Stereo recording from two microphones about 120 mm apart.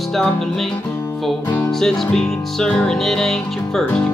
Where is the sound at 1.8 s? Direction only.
5° left (ahead or behind).